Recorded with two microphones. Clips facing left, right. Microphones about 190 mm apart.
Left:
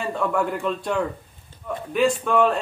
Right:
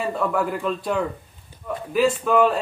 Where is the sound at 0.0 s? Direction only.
5° right (ahead or behind).